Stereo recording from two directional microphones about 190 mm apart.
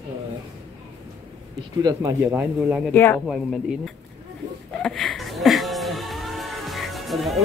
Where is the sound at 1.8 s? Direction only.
15° right (ahead or behind).